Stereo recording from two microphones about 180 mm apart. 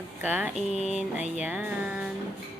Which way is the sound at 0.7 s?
40° left (ahead or behind).